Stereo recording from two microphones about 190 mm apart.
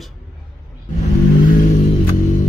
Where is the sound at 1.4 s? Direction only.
45° left (ahead or behind).